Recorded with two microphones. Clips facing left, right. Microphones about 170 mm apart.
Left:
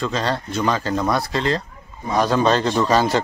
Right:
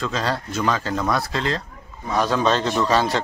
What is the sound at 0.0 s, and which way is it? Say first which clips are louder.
A man's voice: left 2 dB; centre (ahead or behind).